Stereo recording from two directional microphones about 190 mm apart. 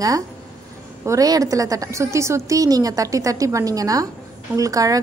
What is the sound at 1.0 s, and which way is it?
A woman's voice, 20° right (ahead or behind).